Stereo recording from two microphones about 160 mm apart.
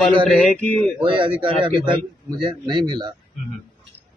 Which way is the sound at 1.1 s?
30° right (ahead or behind).